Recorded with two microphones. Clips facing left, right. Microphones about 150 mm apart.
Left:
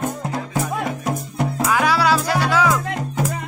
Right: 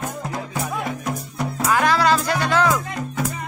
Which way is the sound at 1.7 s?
10° left (ahead or behind).